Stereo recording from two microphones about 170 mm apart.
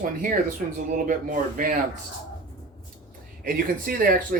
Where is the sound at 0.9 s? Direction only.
50° right (ahead or behind).